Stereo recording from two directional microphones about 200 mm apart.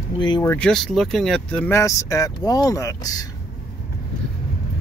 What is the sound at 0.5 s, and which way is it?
Speech, 5° left (ahead or behind).